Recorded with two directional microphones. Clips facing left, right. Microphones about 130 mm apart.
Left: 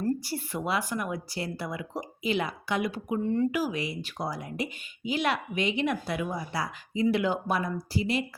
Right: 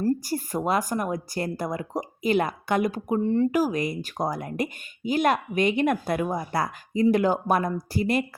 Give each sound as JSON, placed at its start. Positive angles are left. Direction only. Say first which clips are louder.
{"t": 0.0, "sound": "speech", "louder": "right 4 dB", "side_deg": -45}